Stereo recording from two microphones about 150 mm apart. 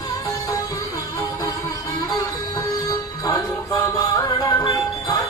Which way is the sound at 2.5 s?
25° left (ahead or behind).